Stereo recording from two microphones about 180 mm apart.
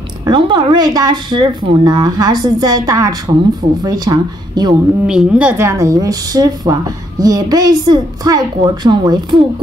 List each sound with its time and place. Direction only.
0.2 s a woman's voice: 25° right (ahead or behind)
5.0 s a woman's voice: 5° right (ahead or behind); by 9.4 s 25° right (ahead or behind)